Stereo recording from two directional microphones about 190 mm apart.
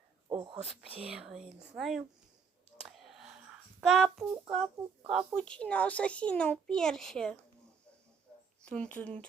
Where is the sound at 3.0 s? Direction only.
Centre (ahead or behind).